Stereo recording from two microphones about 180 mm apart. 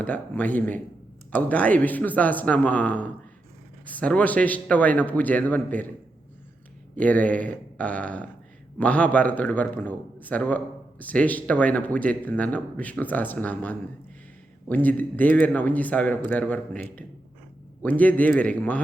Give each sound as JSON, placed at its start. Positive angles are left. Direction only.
{"t": 0.0, "sound": "a man's voice", "side_deg": 10}
{"t": 6.9, "sound": "a man's voice", "side_deg": 10}